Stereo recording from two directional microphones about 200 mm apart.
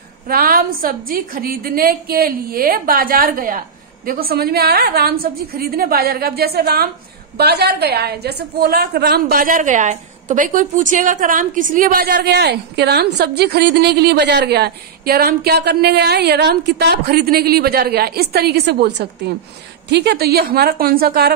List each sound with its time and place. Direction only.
0.3 s a woman's voice: 45° right (ahead or behind)